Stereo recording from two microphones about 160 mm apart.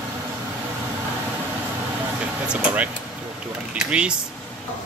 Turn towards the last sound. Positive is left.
turn(degrees=-5)  # may be behind; listen again after turning